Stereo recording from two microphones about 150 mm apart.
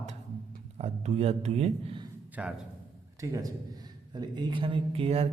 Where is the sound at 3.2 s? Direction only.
20° right (ahead or behind); by 5.2 s 40° right (ahead or behind).